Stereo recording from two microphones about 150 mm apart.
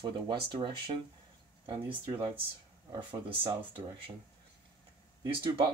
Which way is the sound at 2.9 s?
30° right (ahead or behind).